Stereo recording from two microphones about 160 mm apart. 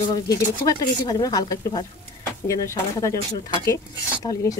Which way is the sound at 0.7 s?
25° left (ahead or behind).